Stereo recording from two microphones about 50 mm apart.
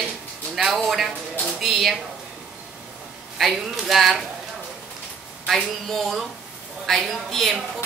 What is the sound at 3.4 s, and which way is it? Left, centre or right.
Speech, centre.